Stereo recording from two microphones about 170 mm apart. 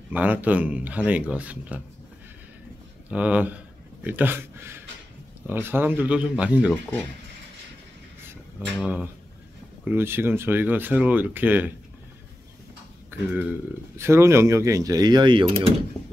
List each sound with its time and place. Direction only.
0.1 s speech: 10° right (ahead or behind)
3.1 s speech: 5° right (ahead or behind)
6.7 s speech: 10° left (ahead or behind)
8.7 s speech: 5° right (ahead or behind)
13.1 s a sound: 15° right (ahead or behind)
13.9 s speech: 15° right (ahead or behind)